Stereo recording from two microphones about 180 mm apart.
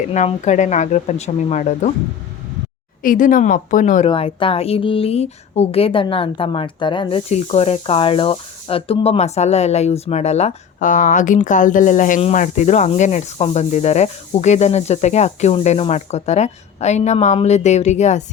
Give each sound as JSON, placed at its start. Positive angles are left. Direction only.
{"t": 0.1, "sound": "a woman's voice", "side_deg": 40}
{"t": 3.0, "sound": "speech", "side_deg": 50}
{"t": 4.1, "sound": "a woman's voice", "side_deg": 30}